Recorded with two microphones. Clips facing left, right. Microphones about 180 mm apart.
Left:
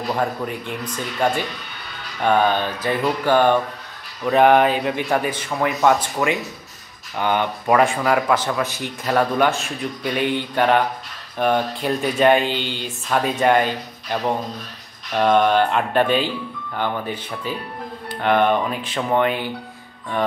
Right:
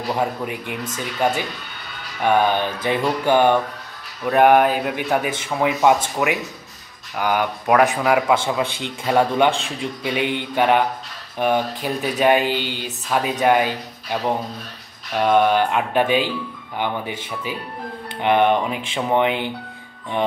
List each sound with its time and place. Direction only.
0.1 s speech: 10° right (ahead or behind)
4.2 s speech: 5° right (ahead or behind)
15.1 s speech: 5° right (ahead or behind)